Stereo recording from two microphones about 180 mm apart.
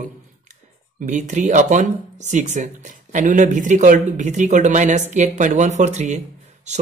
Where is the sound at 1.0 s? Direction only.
40° right (ahead or behind).